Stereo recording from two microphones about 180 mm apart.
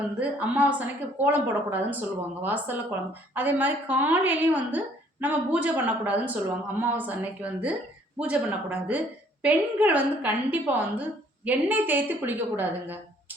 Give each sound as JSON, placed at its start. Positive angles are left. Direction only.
{"t": 0.2, "sound": "a woman's voice", "side_deg": -10}